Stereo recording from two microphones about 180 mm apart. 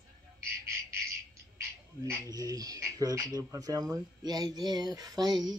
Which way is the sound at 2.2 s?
20° right (ahead or behind).